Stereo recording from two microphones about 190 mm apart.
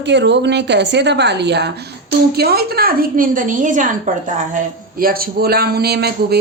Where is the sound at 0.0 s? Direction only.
65° right (ahead or behind).